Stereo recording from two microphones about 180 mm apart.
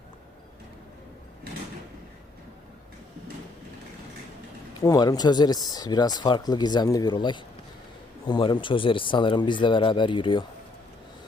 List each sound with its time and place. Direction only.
4.8 s speech: 20° left (ahead or behind)